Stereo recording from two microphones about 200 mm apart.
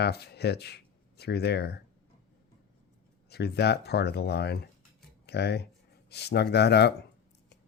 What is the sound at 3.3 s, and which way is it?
Speech, 55° left (ahead or behind).